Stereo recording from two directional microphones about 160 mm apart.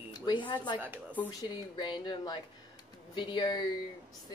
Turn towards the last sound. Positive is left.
turn(degrees=25)  # may be behind; listen again after turning